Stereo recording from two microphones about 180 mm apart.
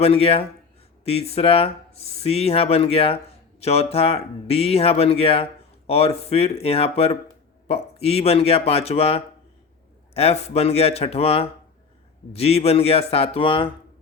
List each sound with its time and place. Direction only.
0.0 s speech: 35° left (ahead or behind)